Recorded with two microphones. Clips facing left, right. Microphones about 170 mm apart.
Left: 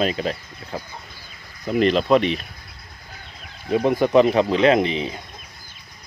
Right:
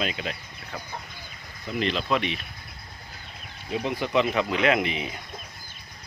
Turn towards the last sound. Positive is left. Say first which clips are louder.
# left 7 dB
turn(degrees=30)  # may be behind; listen again after turning